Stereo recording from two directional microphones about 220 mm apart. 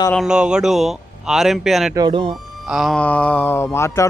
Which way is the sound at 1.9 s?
20° right (ahead or behind).